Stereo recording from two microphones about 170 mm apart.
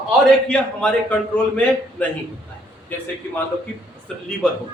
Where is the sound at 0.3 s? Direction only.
5° left (ahead or behind).